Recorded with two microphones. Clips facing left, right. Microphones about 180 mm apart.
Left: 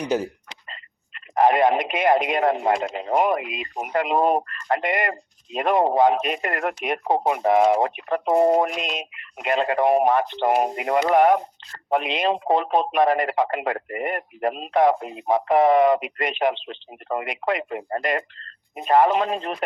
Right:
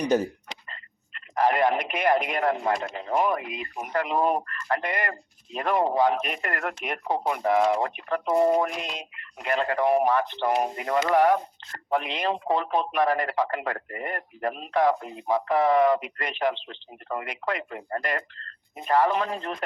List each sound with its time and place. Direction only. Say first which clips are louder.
0.7 s speech: left 2 dB; 20° left (ahead or behind)